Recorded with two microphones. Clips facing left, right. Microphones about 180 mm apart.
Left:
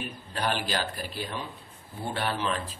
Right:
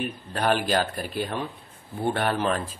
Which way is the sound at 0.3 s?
50° right (ahead or behind).